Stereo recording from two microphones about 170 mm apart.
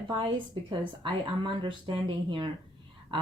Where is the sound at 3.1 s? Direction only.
30° right (ahead or behind).